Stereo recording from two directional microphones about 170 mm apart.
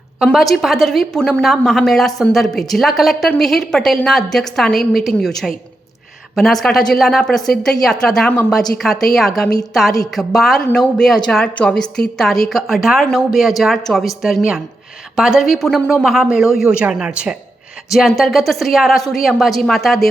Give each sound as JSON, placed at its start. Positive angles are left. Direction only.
{"t": 0.3, "sound": "a woman's voice", "side_deg": 0}